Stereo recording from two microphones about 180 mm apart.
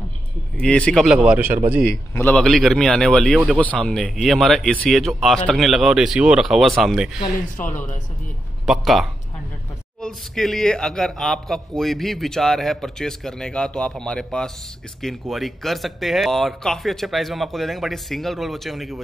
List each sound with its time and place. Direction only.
0.6 s a man's voice: 5° left (ahead or behind)
1.9 s a man's voice: 10° left (ahead or behind)
7.6 s speech: 45° left (ahead or behind)
8.6 s a man's voice: centre (ahead or behind)